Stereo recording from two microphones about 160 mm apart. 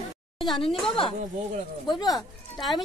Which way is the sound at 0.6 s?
35° left (ahead or behind).